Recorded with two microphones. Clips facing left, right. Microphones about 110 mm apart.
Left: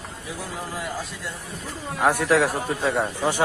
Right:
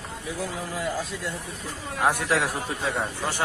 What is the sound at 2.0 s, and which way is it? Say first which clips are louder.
Speech: left 4 dB; 10° left (ahead or behind).